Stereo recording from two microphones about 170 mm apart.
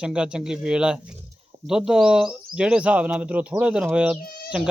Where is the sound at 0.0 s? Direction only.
5° right (ahead or behind).